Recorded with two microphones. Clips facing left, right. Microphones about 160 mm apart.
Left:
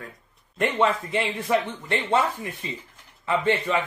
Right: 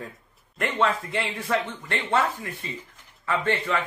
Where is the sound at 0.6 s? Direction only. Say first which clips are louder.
Left 2 dB; 20° left (ahead or behind).